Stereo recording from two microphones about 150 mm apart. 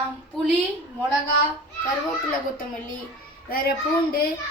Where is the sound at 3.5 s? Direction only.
85° left.